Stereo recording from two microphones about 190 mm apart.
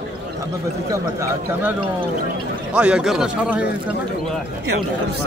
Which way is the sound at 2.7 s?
5° right (ahead or behind).